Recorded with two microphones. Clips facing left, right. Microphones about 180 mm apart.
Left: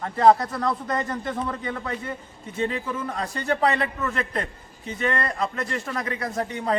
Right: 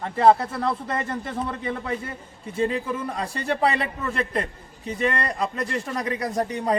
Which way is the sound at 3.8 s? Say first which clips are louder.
Even; 30° right (ahead or behind).